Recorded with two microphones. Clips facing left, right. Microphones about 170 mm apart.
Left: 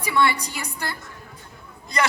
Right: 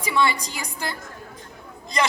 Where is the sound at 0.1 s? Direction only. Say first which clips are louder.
Left 1 dB; 15° right (ahead or behind).